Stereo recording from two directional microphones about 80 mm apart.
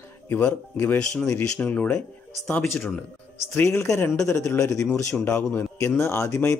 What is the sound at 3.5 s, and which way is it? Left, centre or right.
Speech, left.